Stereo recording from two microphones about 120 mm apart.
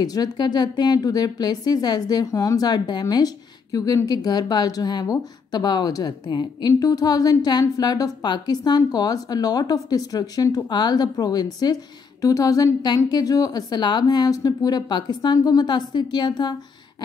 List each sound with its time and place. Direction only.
0.0 s a woman's voice: 30° left (ahead or behind)